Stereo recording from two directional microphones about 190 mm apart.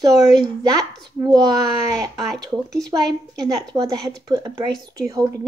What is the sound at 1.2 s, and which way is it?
A woman's voice, 20° right (ahead or behind).